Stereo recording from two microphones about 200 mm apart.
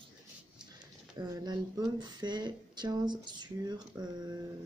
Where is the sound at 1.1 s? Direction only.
20° right (ahead or behind).